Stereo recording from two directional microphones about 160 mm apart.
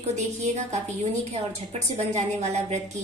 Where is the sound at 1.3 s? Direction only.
45° right (ahead or behind).